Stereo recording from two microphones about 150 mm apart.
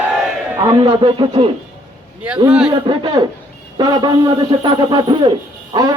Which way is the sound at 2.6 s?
35° right (ahead or behind).